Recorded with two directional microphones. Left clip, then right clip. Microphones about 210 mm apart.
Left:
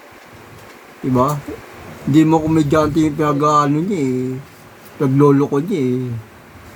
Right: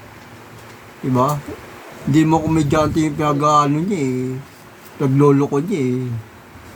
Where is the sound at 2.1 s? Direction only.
Centre (ahead or behind).